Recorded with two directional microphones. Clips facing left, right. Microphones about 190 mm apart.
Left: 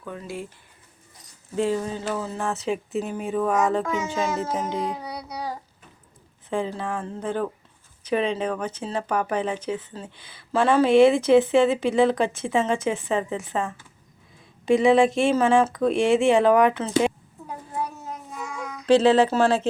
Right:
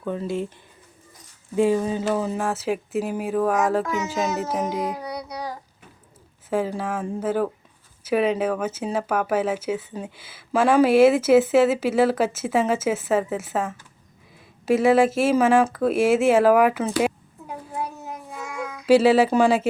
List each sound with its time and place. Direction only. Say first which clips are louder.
0.0 s speech: right 7 dB; 25° right (ahead or behind)
1.5 s speech: right 4 dB; 15° right (ahead or behind)
2.5 s speech: right 1 dB; 5° right (ahead or behind)
6.5 s speech: right 3 dB; 5° right (ahead or behind)
18.9 s speech: right 1 dB; 5° right (ahead or behind)